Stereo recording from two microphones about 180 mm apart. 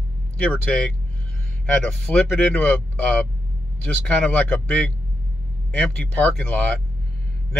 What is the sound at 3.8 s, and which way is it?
Speech, 10° left (ahead or behind).